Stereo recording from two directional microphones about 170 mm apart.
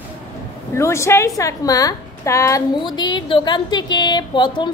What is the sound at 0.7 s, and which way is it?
A woman's voice, 15° left (ahead or behind).